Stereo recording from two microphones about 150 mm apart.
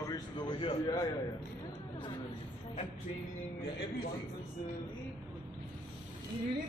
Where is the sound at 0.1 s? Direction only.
30° left (ahead or behind).